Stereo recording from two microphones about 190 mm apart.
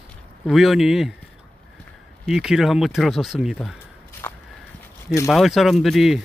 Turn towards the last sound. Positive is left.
turn(degrees=0)  # may be behind; listen again after turning